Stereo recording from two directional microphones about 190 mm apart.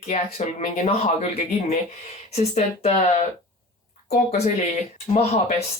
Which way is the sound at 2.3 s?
35° left (ahead or behind).